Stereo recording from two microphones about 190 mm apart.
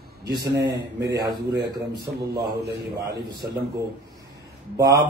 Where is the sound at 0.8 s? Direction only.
65° right (ahead or behind).